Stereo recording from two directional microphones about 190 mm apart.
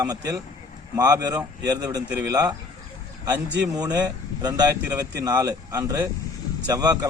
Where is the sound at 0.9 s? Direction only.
20° right (ahead or behind).